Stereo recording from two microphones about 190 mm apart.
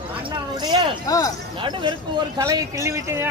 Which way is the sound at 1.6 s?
25° right (ahead or behind).